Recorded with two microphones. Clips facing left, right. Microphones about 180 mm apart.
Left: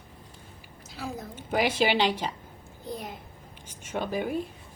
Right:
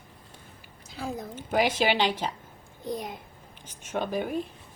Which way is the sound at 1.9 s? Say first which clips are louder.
Left 1 dB; 10° right (ahead or behind).